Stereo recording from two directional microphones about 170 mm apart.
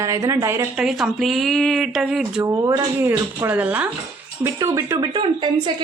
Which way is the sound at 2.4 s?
20° right (ahead or behind).